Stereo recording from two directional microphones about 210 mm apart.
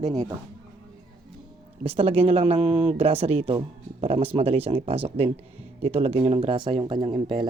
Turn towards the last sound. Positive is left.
turn(degrees=-20)  # may be behind; listen again after turning